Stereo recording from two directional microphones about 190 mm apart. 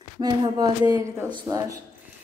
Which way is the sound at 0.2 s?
20° right (ahead or behind).